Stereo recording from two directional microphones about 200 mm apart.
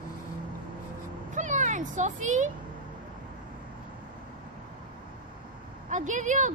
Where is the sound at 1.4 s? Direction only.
40° right (ahead or behind).